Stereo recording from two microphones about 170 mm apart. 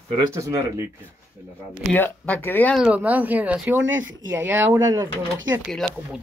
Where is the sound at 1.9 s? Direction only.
10° left (ahead or behind).